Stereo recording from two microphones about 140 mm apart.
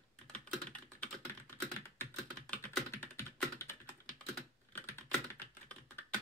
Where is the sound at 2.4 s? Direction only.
10° left (ahead or behind).